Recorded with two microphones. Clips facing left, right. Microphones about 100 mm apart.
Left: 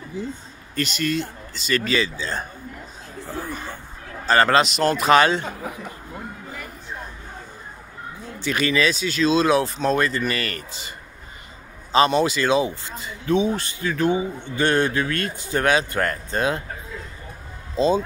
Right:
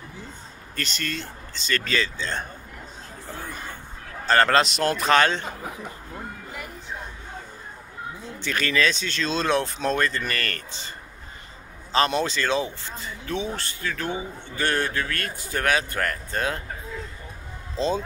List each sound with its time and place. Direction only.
0.7 s speech: 15° left (ahead or behind)
4.3 s a man's voice: 5° left (ahead or behind)
8.4 s speech: 15° left (ahead or behind)
12.1 s speech: 10° left (ahead or behind)
17.7 s speech: 10° left (ahead or behind)